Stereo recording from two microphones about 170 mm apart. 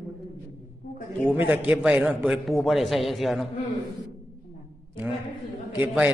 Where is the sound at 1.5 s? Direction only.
10° right (ahead or behind).